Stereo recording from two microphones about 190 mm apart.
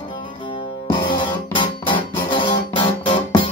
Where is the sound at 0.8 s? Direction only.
25° left (ahead or behind).